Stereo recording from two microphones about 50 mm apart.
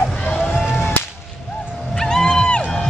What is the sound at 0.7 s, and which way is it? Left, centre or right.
Whip, left.